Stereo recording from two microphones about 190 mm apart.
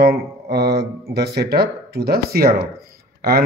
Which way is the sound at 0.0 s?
55° right (ahead or behind).